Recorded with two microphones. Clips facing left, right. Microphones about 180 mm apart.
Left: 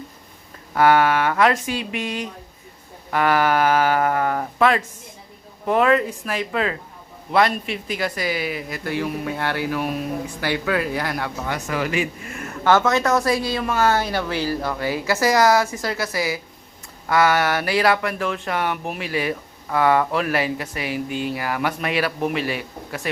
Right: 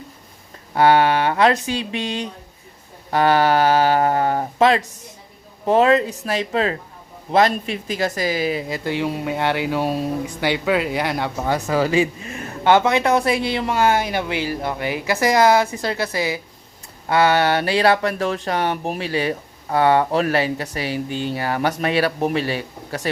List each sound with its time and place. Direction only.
0.7 s speech: 30° right (ahead or behind)
8.5 s speech: 25° right (ahead or behind)
11.4 s speech: 30° right (ahead or behind)
13.7 s speech: 15° right (ahead or behind); by 23.0 s 30° right (ahead or behind)